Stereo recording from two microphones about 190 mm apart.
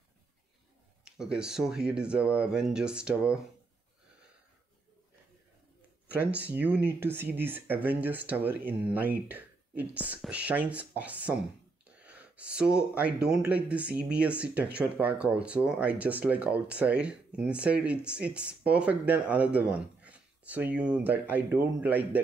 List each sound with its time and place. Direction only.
1.0 s speech: 5° right (ahead or behind)
6.0 s speech: 10° right (ahead or behind)